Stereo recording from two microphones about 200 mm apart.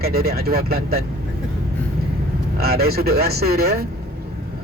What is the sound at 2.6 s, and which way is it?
A man's voice, 50° right (ahead or behind).